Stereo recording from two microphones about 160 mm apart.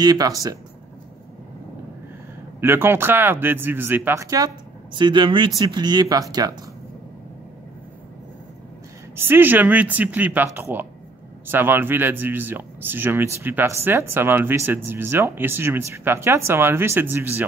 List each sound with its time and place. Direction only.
0.0 s speech: 25° right (ahead or behind)
2.6 s speech: 15° right (ahead or behind)
9.1 s speech: 15° right (ahead or behind)